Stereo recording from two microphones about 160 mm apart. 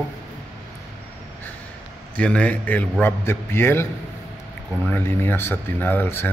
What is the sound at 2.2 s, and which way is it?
Speech, 10° left (ahead or behind).